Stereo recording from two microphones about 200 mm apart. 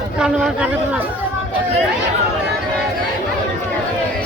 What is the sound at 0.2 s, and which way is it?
Speech, 5° right (ahead or behind).